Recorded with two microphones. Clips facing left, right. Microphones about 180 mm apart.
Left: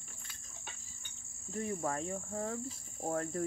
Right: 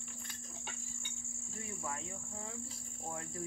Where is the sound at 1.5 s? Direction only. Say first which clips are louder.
Left 9 dB; 45° left (ahead or behind).